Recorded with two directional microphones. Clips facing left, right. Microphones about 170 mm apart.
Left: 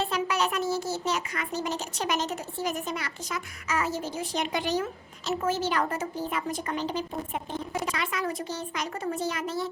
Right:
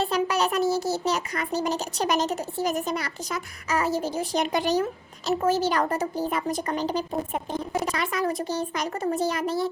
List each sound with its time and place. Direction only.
0.0 s a child's voice: 35° right (ahead or behind)